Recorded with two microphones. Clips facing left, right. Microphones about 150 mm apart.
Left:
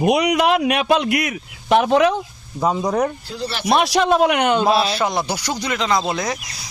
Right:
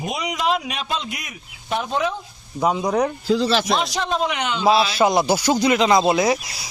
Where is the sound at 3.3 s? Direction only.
90° right.